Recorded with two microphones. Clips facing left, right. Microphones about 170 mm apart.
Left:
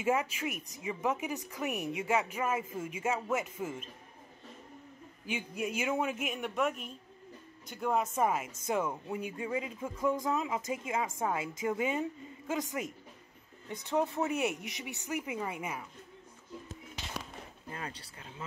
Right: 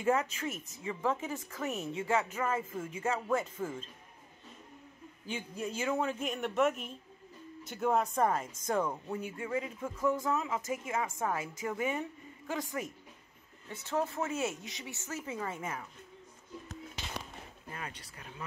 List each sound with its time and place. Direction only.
0.0 s a woman's voice: 10° left (ahead or behind)
5.2 s a woman's voice: 10° left (ahead or behind)
6.2 s a woman's voice: centre (ahead or behind)
17.6 s speech: 30° left (ahead or behind)